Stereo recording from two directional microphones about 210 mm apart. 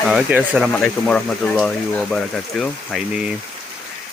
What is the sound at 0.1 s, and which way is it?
Speech, 5° right (ahead or behind).